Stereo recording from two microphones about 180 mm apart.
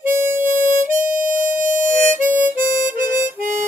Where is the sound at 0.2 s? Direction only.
15° right (ahead or behind).